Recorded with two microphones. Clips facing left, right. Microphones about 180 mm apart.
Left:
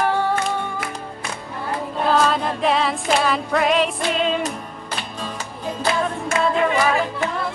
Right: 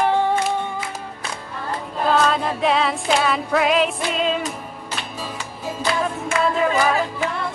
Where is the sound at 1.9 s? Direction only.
Centre (ahead or behind).